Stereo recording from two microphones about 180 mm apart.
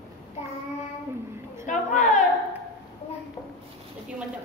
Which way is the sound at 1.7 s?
45° left (ahead or behind).